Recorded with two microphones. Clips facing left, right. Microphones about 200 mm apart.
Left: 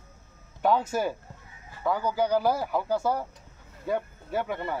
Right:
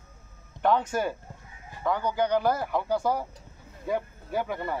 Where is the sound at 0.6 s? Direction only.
5° left (ahead or behind).